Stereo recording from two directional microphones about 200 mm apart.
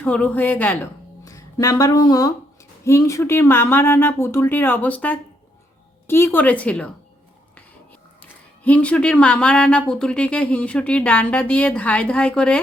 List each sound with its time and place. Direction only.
0.0 s speech: 5° left (ahead or behind)
8.2 s speech: 5° left (ahead or behind)